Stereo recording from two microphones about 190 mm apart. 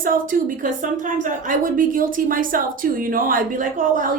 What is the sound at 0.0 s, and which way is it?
A woman's voice, 45° right (ahead or behind).